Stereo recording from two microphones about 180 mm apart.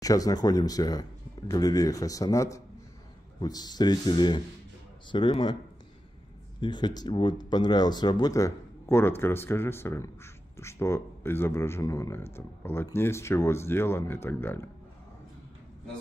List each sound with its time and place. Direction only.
0.0 s a man's voice: 20° left (ahead or behind)
6.6 s speech: 25° left (ahead or behind)